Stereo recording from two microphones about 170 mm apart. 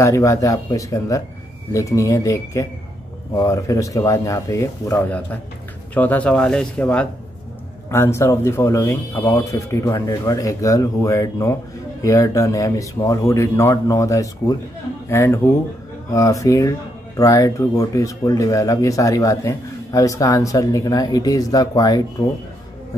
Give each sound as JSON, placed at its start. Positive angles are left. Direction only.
{"t": 0.0, "sound": "speech", "side_deg": 15}